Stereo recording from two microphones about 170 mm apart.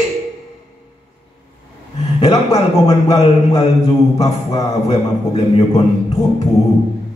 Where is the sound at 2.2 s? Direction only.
40° left (ahead or behind).